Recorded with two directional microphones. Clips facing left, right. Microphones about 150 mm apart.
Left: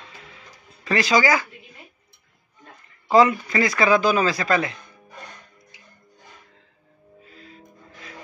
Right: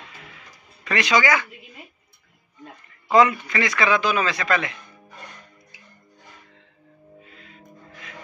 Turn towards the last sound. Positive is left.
turn(degrees=35)  # may be behind; listen again after turning